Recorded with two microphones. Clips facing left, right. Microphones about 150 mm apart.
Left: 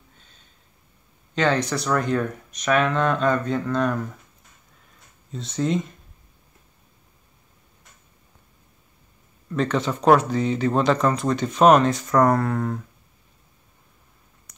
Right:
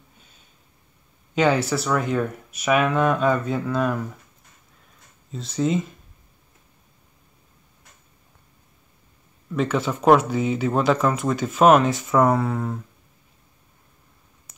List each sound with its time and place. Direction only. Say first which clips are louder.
1.3 s speech: right 2 dB; 10° right (ahead or behind)
5.3 s speech: right 1 dB; centre (ahead or behind)
9.5 s speech: even; 5° right (ahead or behind)